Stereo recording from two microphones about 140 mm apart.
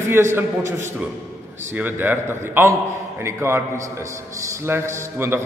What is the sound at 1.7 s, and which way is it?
A man's voice, 15° right (ahead or behind).